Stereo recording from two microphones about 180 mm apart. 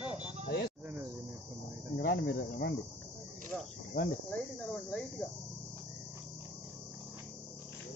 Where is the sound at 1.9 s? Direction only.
60° left (ahead or behind).